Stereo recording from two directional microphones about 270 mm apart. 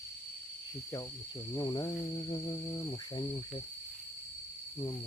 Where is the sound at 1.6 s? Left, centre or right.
Centre.